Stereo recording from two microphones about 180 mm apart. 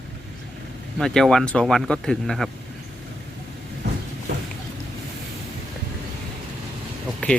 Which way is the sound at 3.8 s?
70° right (ahead or behind).